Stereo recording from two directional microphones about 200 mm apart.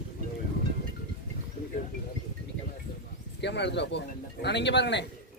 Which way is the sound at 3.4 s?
60° left (ahead or behind).